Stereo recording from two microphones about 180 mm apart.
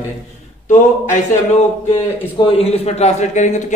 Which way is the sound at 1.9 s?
30° left (ahead or behind).